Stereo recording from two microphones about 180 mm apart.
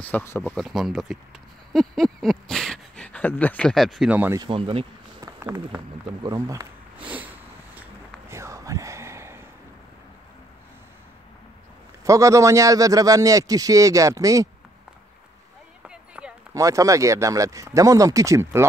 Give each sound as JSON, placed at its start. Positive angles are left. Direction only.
{"t": 0.0, "sound": "speech", "side_deg": 10}
{"t": 0.6, "sound": "speech", "side_deg": 0}
{"t": 4.4, "sound": "a man's voice", "side_deg": -30}
{"t": 5.2, "sound": "a sound", "side_deg": -15}
{"t": 6.2, "sound": "a man's voice", "side_deg": -20}
{"t": 7.0, "sound": "sniff", "side_deg": -10}
{"t": 7.7, "sound": "a sound", "side_deg": -10}
{"t": 12.0, "sound": "a man's voice", "side_deg": -15}
{"t": 15.9, "sound": "a sound", "side_deg": -5}
{"t": 16.5, "sound": "speech", "side_deg": -20}